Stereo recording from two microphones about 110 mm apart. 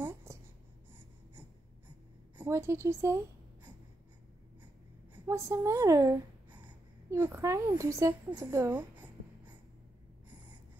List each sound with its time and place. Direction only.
0.0 s writing: 20° right (ahead or behind)
2.3 s a woman's voice: 20° right (ahead or behind)
5.1 s a woman's voice: 25° right (ahead or behind)
6.5 s a woman's voice: 15° right (ahead or behind)